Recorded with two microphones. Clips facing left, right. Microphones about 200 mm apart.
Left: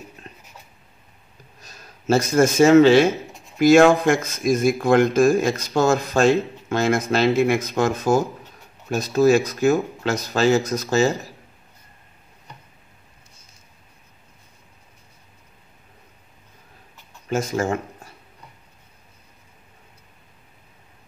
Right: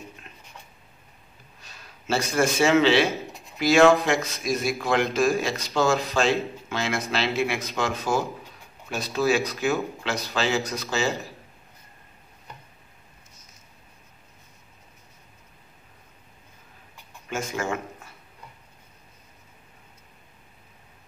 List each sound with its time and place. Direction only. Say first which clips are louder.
0.3 s writing: left 6 dB; 40° left (ahead or behind)
1.6 s a man's voice: left 3 dB; 40° left (ahead or behind)
17.3 s speech: left 6 dB; 35° left (ahead or behind)